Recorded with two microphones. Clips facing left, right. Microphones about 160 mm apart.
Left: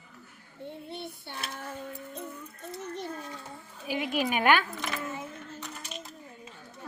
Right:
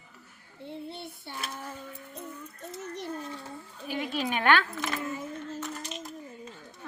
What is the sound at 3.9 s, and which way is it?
Speech, 10° left (ahead or behind).